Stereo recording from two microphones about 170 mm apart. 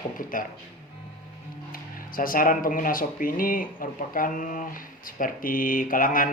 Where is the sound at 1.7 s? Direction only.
55° left (ahead or behind).